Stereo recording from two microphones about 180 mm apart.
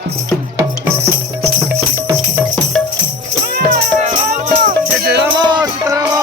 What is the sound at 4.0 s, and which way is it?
Music, 40° right (ahead or behind).